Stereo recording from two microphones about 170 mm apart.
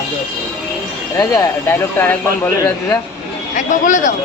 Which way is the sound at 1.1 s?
20° left (ahead or behind).